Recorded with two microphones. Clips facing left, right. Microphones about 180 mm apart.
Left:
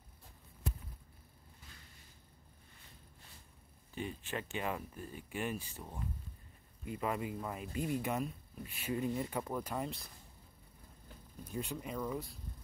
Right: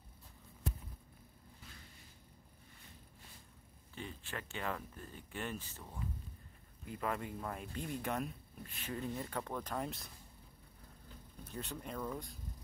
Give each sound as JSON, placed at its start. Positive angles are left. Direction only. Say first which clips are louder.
{"t": 3.9, "sound": "speech", "louder": "left 5 dB", "side_deg": 15}
{"t": 11.4, "sound": "speech", "louder": "left 4 dB", "side_deg": 10}